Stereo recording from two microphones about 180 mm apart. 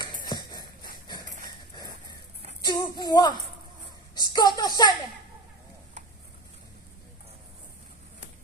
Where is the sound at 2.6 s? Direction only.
25° left (ahead or behind).